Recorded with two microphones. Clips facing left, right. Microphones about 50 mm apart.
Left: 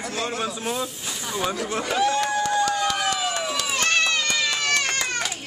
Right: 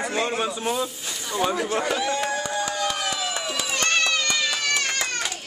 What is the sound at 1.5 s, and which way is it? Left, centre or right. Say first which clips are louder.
Speech: right 3 dB; centre.